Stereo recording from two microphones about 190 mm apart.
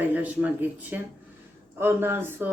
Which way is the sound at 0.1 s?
10° right (ahead or behind).